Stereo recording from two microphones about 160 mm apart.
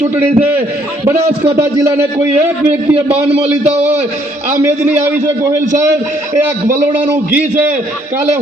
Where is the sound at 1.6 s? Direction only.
15° right (ahead or behind).